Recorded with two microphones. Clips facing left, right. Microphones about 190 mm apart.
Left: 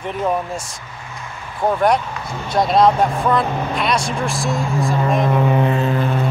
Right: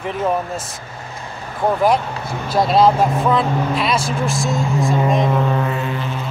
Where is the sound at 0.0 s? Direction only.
Centre (ahead or behind).